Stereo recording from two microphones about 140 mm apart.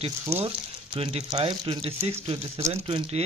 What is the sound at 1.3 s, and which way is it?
Speech, 35° right (ahead or behind).